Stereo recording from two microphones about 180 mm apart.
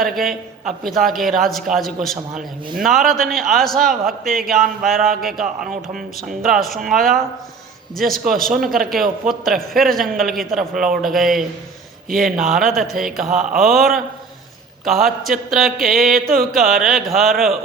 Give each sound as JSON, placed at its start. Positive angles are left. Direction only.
{"t": 0.0, "sound": "a man's voice", "side_deg": 0}
{"t": 12.0, "sound": "a sound", "side_deg": -55}
{"t": 12.4, "sound": "a man's voice", "side_deg": 0}
{"t": 14.8, "sound": "a man's voice", "side_deg": 0}
{"t": 16.2, "sound": "a sound", "side_deg": -55}
{"t": 16.6, "sound": "a man's voice", "side_deg": 0}